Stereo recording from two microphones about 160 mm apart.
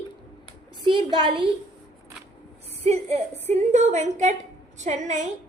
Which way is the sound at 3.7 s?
45° right (ahead or behind).